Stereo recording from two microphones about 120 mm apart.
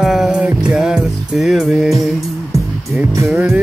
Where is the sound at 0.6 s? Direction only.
5° right (ahead or behind).